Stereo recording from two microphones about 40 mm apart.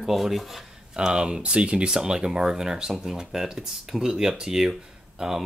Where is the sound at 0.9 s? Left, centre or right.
Centre.